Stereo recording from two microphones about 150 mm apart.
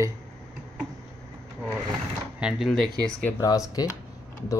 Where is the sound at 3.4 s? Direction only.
25° left (ahead or behind).